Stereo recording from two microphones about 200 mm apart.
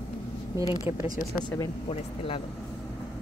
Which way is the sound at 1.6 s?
25° left (ahead or behind).